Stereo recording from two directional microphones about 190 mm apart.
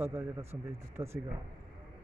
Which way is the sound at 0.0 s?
15° right (ahead or behind).